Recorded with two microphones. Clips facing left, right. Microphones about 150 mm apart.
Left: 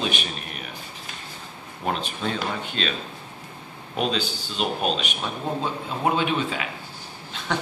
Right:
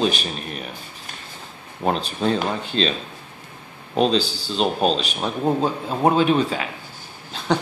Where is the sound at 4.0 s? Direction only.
30° right (ahead or behind).